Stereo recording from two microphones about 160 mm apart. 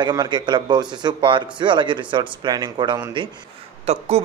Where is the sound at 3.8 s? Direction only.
40° right (ahead or behind).